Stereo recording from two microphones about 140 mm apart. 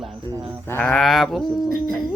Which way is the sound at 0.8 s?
Centre (ahead or behind).